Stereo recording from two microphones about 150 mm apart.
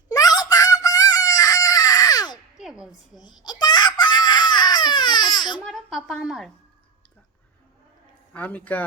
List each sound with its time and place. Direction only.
0.1 s a sound: 25° left (ahead or behind)
2.6 s music: 5° right (ahead or behind)
3.2 s crying: 30° left (ahead or behind)
5.6 s speech: centre (ahead or behind)
8.3 s a man's voice: 10° left (ahead or behind)